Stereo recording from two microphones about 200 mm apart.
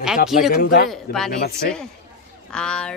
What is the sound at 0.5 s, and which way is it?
Speech, 50° left (ahead or behind).